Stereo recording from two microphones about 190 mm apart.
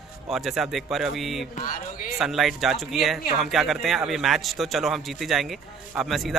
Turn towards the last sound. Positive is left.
turn(degrees=0)  # may be behind; listen again after turning